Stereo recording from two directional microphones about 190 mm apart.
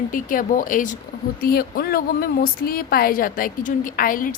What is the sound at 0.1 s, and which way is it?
A woman's voice, 45° left (ahead or behind).